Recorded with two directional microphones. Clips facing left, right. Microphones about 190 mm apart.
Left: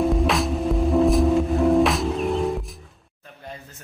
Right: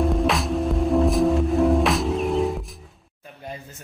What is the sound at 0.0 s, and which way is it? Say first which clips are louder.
Music: left 1 dB; centre (ahead or behind).